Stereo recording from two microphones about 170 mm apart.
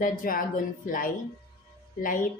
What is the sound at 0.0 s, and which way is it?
Speech, 55° left (ahead or behind).